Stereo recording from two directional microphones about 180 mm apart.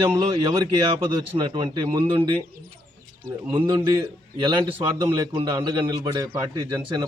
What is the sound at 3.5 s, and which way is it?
Speech, 25° right (ahead or behind).